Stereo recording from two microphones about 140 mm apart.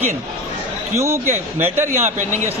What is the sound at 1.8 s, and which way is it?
Speech, 60° right (ahead or behind).